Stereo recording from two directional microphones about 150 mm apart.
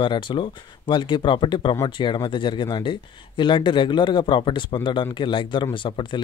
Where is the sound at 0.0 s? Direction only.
35° left (ahead or behind).